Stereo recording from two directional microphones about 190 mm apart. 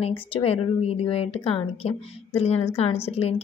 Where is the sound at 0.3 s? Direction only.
30° left (ahead or behind).